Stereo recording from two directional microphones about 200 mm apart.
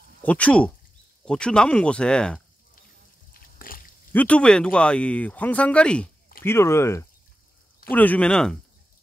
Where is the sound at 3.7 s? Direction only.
45° left (ahead or behind).